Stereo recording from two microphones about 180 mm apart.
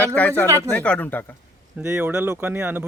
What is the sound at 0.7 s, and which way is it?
Speech, 5° left (ahead or behind).